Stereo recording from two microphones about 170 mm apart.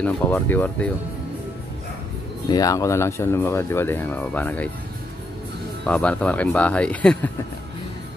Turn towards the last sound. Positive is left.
turn(degrees=10)  # may be behind; listen again after turning